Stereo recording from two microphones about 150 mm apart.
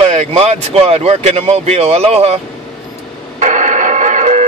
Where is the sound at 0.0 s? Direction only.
45° right (ahead or behind).